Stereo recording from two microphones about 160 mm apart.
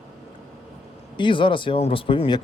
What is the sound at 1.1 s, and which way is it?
Speech, 30° left (ahead or behind).